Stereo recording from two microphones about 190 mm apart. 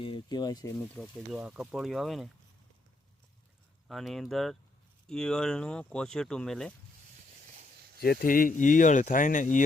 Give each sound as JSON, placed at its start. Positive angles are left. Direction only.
{"t": 0.0, "sound": "speech", "side_deg": 25}
{"t": 0.9, "sound": "speech", "side_deg": -5}
{"t": 3.8, "sound": "speech", "side_deg": 0}
{"t": 7.9, "sound": "speech", "side_deg": 55}